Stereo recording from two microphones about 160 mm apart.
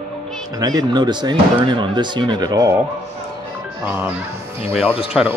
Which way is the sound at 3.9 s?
10° right (ahead or behind).